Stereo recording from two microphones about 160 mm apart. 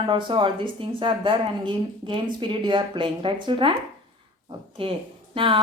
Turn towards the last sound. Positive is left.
turn(degrees=-30)  # may be behind; listen again after turning